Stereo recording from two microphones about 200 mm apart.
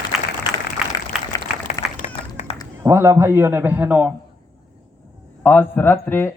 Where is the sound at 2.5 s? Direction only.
30° left (ahead or behind).